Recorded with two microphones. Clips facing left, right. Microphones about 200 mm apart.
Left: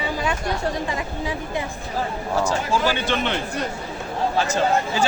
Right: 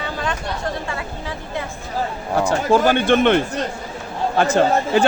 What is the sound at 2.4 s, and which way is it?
A man's voice, 55° right (ahead or behind).